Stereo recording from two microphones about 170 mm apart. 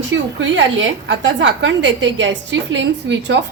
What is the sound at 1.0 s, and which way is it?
A woman's voice, 90° right.